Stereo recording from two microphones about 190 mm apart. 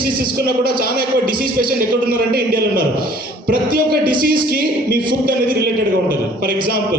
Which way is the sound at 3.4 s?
50° right (ahead or behind).